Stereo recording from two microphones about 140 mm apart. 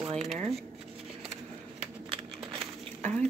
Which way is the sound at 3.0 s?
10° left (ahead or behind).